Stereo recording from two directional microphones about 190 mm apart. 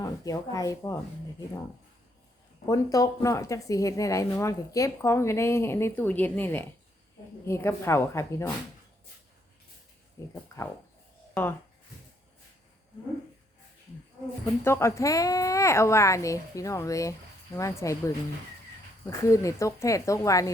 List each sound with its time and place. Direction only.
0.0 s a woman's voice: 20° left (ahead or behind)
2.6 s a woman's voice: 15° left (ahead or behind)
10.2 s a woman's voice: 15° left (ahead or behind)
14.4 s a woman's voice: 15° left (ahead or behind)
19.2 s a woman's voice: 15° left (ahead or behind)